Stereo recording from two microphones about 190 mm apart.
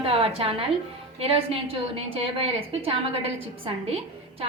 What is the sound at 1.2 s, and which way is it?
A woman's voice, 30° right (ahead or behind).